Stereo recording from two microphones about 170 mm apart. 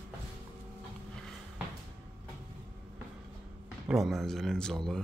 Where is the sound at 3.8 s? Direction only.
Centre (ahead or behind).